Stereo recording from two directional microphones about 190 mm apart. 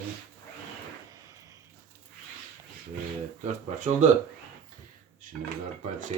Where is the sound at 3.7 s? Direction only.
40° right (ahead or behind).